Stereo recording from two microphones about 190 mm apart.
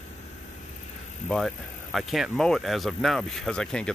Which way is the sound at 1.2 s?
Centre (ahead or behind).